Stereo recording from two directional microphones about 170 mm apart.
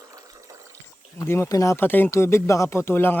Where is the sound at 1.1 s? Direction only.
15° left (ahead or behind).